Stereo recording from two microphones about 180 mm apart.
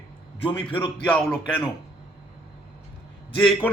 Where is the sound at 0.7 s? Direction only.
30° left (ahead or behind).